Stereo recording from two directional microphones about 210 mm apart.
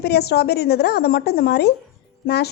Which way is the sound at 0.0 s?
50° left (ahead or behind).